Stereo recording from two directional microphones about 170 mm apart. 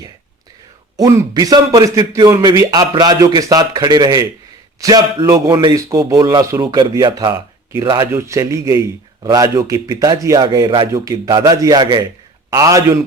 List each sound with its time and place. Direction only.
0.9 s a man's voice: 20° right (ahead or behind)